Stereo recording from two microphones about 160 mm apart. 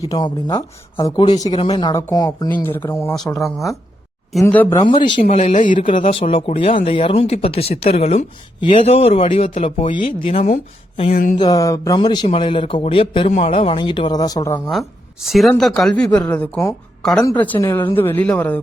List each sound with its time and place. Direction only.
0.1 s speech: 25° left (ahead or behind)
4.4 s speech: 10° left (ahead or behind)
4.8 s speech: 30° left (ahead or behind)
5.4 s speech: 50° left (ahead or behind)
5.8 s speech: 35° left (ahead or behind)
11.1 s a sound: 65° left (ahead or behind)
11.3 s speech: 25° left (ahead or behind)
13.3 s speech: 50° left (ahead or behind)
13.6 s speech: 35° left (ahead or behind)
14.7 s a woman's voice: centre (ahead or behind)